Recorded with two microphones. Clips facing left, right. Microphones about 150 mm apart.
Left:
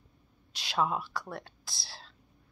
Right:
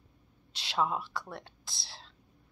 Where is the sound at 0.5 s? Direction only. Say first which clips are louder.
Left 1 dB; 25° right (ahead or behind).